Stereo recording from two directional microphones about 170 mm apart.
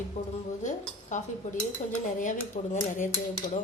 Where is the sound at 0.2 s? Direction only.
45° left (ahead or behind).